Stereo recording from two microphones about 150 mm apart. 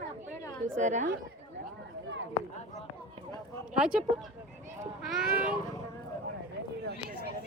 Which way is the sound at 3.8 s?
5° right (ahead or behind).